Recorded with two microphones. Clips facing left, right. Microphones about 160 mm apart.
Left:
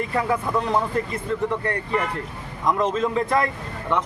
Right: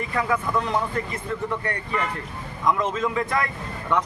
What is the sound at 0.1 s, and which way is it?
Speech, 30° left (ahead or behind).